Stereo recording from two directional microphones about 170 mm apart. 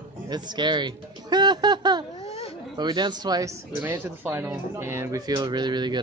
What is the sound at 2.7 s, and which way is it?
Speech, 25° right (ahead or behind).